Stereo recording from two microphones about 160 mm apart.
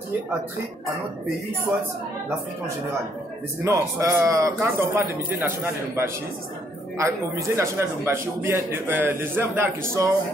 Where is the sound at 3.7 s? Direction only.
20° right (ahead or behind).